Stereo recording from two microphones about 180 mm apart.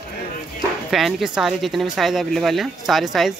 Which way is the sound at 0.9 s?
Centre (ahead or behind).